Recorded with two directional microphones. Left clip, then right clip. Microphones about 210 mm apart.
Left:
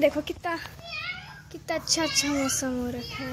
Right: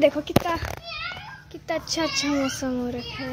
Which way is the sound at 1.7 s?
Centre (ahead or behind).